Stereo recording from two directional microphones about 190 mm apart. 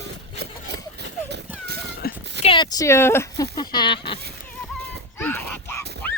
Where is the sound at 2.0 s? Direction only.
55° left (ahead or behind).